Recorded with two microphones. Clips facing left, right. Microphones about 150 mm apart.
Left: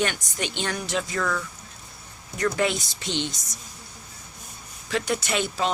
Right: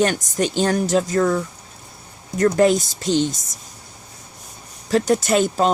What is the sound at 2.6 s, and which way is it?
Speech, 40° right (ahead or behind).